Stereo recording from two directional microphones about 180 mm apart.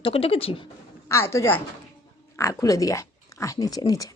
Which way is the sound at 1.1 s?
15° left (ahead or behind).